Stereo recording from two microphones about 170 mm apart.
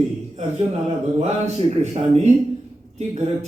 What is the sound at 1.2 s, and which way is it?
Speech, 40° right (ahead or behind).